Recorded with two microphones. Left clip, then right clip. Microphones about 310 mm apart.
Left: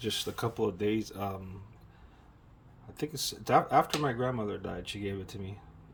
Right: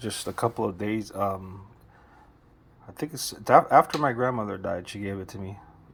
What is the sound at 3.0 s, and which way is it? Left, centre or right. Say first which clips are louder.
Speech: right 2 dB; centre.